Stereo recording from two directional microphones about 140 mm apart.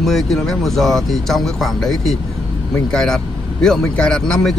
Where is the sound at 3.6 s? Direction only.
5° left (ahead or behind).